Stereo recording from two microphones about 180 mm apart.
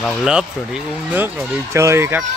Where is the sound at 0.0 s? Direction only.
5° right (ahead or behind).